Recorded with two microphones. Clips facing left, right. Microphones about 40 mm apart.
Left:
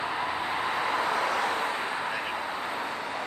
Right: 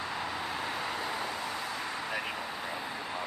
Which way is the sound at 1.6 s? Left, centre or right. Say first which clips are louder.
Left 6 dB; left.